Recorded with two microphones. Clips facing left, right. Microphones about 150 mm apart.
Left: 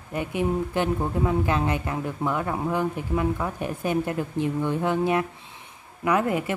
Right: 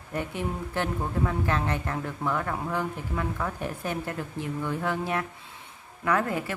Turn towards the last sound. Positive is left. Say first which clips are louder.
# left 3 dB
turn(degrees=20)  # may be behind; listen again after turning